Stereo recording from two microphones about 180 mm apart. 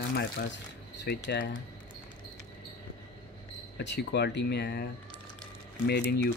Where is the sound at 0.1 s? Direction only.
65° left (ahead or behind).